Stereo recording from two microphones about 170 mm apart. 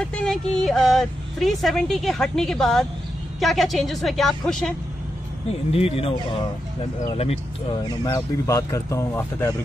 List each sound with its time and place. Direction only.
0.0 s a woman's voice: 5° left (ahead or behind)
5.7 s speech: 35° left (ahead or behind)
8.0 s speech: 20° left (ahead or behind)